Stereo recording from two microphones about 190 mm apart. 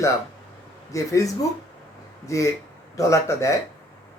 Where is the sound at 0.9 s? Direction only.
15° left (ahead or behind).